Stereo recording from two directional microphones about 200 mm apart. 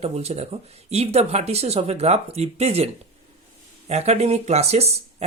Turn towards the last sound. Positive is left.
turn(degrees=-35)  # may be behind; listen again after turning